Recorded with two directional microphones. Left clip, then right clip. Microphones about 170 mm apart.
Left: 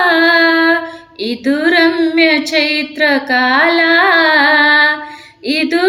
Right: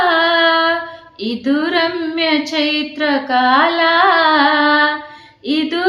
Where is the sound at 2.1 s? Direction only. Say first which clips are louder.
Left 3 dB; 20° left (ahead or behind).